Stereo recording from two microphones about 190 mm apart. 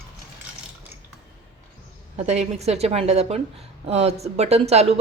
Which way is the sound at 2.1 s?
35° right (ahead or behind).